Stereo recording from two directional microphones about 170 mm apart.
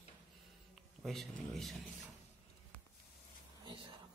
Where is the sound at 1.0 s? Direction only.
Centre (ahead or behind).